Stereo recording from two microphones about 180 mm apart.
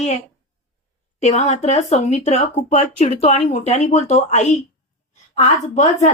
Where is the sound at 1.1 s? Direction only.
40° left (ahead or behind).